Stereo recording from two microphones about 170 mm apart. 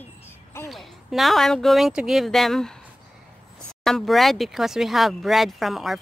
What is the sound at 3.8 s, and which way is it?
Speech, centre (ahead or behind).